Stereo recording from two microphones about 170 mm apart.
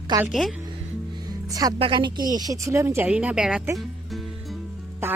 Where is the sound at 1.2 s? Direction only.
20° right (ahead or behind).